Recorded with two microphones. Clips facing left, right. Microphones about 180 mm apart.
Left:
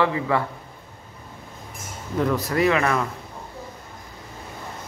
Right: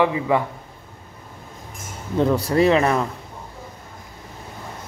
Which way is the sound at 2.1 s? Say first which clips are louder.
Right 4 dB; 30° right (ahead or behind).